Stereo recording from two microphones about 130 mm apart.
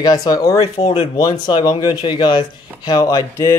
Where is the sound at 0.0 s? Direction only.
30° left (ahead or behind).